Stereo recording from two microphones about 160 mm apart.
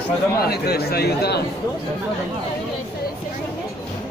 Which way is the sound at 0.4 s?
75° left (ahead or behind).